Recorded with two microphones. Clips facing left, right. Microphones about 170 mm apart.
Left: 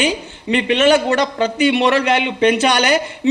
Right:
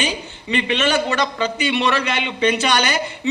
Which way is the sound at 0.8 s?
45° left (ahead or behind).